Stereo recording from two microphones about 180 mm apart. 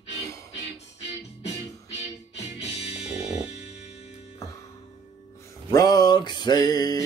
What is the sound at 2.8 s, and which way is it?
Music, 35° left (ahead or behind).